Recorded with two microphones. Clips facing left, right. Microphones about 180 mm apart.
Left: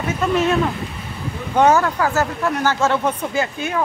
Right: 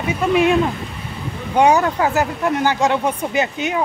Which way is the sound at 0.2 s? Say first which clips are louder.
Right 3 dB; 10° right (ahead or behind).